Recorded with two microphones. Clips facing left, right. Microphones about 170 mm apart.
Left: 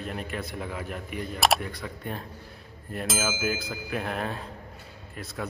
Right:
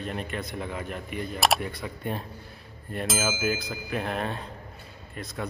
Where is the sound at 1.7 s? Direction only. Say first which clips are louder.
Right 3 dB; 25° right (ahead or behind).